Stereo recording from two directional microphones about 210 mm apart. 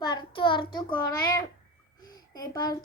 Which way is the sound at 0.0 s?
20° left (ahead or behind).